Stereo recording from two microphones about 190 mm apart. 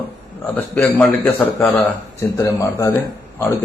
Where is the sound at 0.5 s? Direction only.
10° left (ahead or behind).